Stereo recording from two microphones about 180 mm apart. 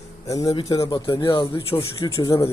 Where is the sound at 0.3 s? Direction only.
20° left (ahead or behind).